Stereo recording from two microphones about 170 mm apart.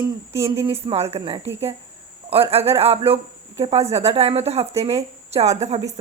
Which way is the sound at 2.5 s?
35° right (ahead or behind).